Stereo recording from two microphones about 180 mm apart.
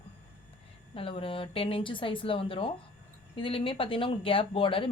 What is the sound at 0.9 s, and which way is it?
A woman's voice, 30° left (ahead or behind).